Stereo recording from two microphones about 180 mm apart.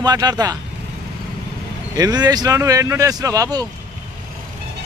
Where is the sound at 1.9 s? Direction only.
20° right (ahead or behind).